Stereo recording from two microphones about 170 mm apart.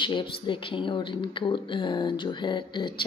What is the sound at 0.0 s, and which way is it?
Speech, 30° left (ahead or behind).